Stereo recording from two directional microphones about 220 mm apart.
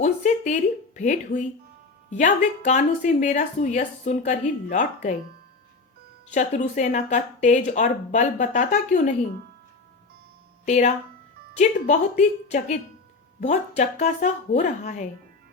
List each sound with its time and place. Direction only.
0.0 s speech: 35° left (ahead or behind)
6.3 s speech: 35° left (ahead or behind)
10.7 s speech: 30° left (ahead or behind)